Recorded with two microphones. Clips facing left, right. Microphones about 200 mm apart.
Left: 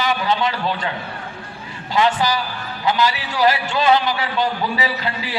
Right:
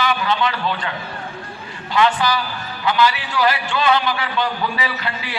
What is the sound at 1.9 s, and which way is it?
A man's voice, 40° left (ahead or behind).